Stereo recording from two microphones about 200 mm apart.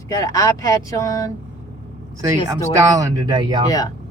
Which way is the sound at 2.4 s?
15° right (ahead or behind).